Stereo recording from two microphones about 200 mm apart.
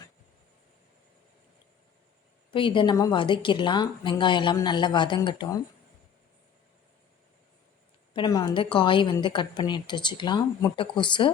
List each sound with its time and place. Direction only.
2.5 s a woman's voice: 25° left (ahead or behind)
8.1 s a woman's voice: 20° left (ahead or behind)